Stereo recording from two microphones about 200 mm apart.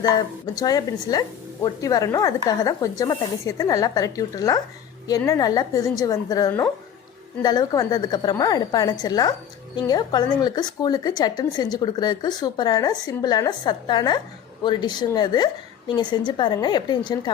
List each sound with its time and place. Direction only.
0.5 s speech: 20° left (ahead or behind)